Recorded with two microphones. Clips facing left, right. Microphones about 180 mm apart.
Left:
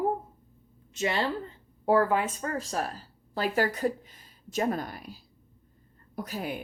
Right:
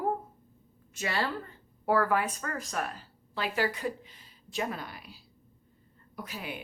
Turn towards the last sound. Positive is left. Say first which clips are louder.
# left 6 dB
turn(degrees=40)  # may be behind; listen again after turning